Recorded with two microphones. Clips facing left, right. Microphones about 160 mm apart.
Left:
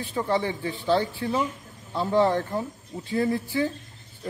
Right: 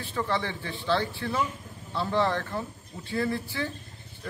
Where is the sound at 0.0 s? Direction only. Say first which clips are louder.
Left 4 dB; 15° left (ahead or behind).